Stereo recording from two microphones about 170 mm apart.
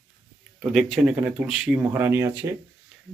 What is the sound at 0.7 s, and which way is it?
Speech, centre (ahead or behind).